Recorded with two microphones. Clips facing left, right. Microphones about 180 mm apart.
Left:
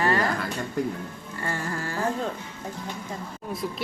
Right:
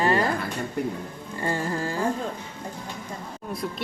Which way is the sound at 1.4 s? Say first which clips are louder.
Right 4 dB; 20° right (ahead or behind).